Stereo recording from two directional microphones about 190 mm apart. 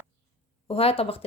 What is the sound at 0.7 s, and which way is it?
Speech, 30° left (ahead or behind).